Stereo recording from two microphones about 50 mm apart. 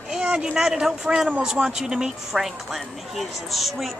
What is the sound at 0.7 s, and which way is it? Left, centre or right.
Speech, centre.